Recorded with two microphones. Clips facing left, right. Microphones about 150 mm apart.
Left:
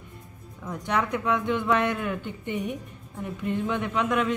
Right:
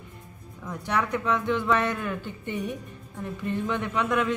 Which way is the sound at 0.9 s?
20° left (ahead or behind).